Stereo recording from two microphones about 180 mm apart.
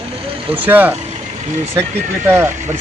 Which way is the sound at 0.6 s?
10° right (ahead or behind).